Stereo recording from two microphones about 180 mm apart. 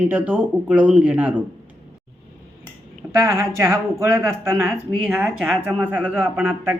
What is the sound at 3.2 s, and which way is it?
Speech, 15° right (ahead or behind).